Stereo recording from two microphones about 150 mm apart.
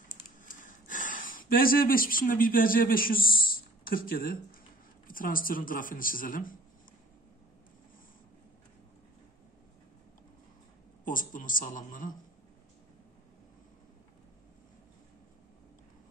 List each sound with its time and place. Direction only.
0.4 s speech: 65° left (ahead or behind)
11.1 s a man's voice: 65° left (ahead or behind)